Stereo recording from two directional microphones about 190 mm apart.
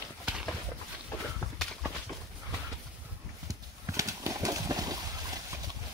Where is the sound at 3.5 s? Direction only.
15° right (ahead or behind).